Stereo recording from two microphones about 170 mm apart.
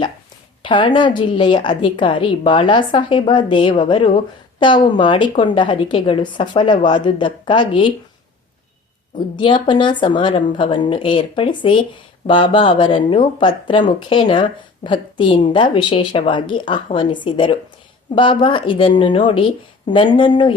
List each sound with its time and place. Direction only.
0.6 s speech: 30° left (ahead or behind)
9.1 s speech: 25° left (ahead or behind)